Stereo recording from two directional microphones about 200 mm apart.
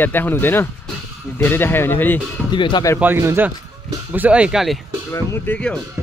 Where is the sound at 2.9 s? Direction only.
10° right (ahead or behind).